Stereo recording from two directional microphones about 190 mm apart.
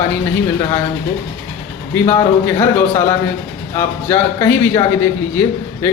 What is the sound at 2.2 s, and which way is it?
Speech, 20° left (ahead or behind).